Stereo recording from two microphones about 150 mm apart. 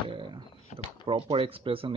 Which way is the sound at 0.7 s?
35° right (ahead or behind).